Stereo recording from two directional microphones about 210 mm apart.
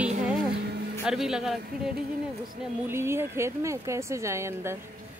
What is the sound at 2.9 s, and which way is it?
Speech, 10° right (ahead or behind).